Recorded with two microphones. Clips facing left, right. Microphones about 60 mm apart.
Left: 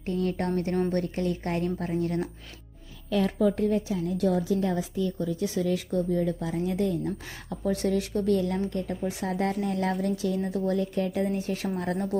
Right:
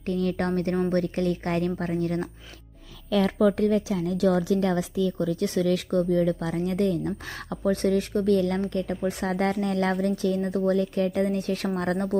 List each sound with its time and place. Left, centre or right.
0.0 s speech: right
3.5 s a woman's voice: right
7.6 s speech: right